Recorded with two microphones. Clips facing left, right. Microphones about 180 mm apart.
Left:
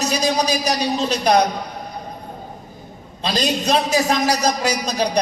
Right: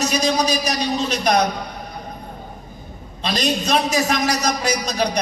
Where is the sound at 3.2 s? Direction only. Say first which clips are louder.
Left 1 dB; 35° left (ahead or behind).